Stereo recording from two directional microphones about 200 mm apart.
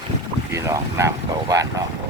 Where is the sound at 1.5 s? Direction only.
15° right (ahead or behind).